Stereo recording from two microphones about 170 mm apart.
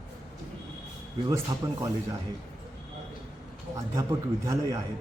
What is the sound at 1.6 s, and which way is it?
Speech, 20° right (ahead or behind).